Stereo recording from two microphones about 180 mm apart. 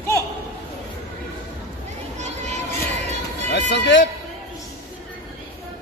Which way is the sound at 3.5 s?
75° left (ahead or behind).